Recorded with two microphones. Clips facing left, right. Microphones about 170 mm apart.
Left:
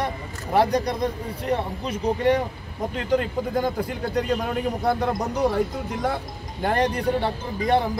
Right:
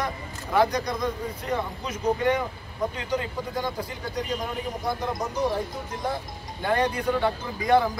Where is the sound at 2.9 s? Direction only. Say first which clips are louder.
Left 6 dB; 50° left (ahead or behind); by 6.2 s 70° left (ahead or behind).